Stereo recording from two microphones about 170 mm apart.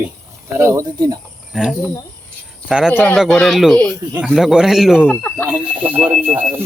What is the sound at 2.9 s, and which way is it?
A man's voice, 10° left (ahead or behind).